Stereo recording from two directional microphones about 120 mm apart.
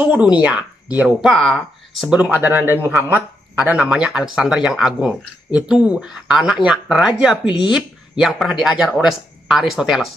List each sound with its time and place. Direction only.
0.0 s speech: 10° right (ahead or behind)
2.0 s speech: 10° right (ahead or behind)
7.4 s speech: 40° left (ahead or behind)
7.7 s speech: 5° right (ahead or behind)